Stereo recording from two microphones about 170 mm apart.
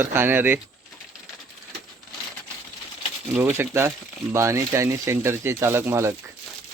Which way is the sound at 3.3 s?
15° right (ahead or behind).